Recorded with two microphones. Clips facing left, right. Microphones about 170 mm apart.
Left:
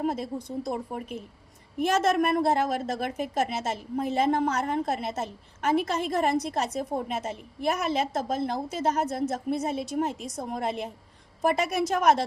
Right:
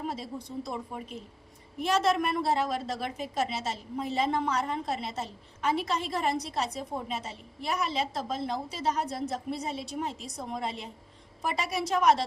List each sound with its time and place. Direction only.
0.0 s a woman's voice: 50° left (ahead or behind)